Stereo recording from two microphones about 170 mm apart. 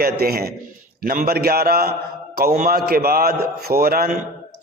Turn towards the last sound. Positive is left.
turn(degrees=-60)  # may be behind; listen again after turning